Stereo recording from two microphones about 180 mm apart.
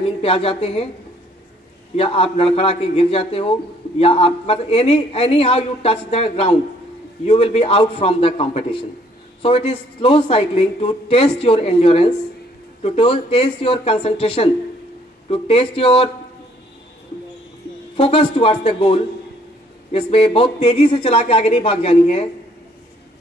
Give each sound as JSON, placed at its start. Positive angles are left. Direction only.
{"t": 0.0, "sound": "speech", "side_deg": 30}
{"t": 2.0, "sound": "speech", "side_deg": 30}
{"t": 17.9, "sound": "speech", "side_deg": 30}